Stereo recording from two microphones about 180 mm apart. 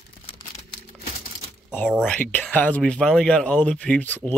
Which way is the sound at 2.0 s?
10° left (ahead or behind).